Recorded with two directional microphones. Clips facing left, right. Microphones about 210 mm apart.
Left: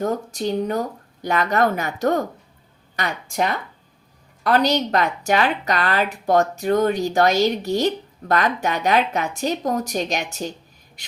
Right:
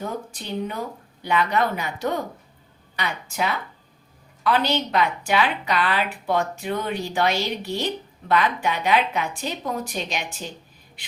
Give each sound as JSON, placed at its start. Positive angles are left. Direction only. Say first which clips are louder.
{"t": 0.0, "sound": "a woman's voice", "louder": "left 8 dB", "side_deg": 45}